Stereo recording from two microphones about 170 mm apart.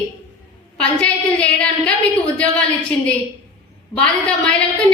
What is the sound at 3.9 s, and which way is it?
A woman's voice, 5° left (ahead or behind).